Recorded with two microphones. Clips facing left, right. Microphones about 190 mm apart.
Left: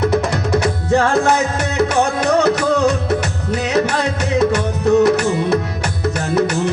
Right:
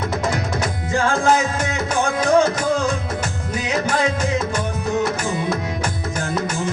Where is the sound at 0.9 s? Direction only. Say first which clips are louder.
Left 3 dB; 65° left (ahead or behind).